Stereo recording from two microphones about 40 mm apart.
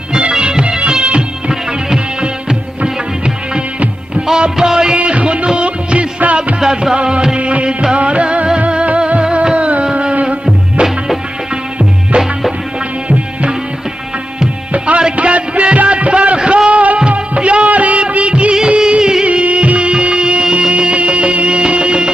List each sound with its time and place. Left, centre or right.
0.3 s music: right
4.3 s music: centre
4.9 s music: right
6.6 s music: centre
7.3 s music: right
15.1 s music: right
19.2 s music: right